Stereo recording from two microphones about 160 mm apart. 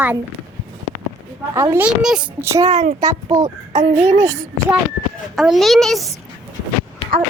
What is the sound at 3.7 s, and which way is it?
Speech, 45° right (ahead or behind).